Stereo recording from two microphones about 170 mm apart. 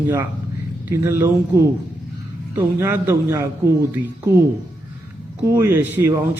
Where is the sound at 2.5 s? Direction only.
15° right (ahead or behind).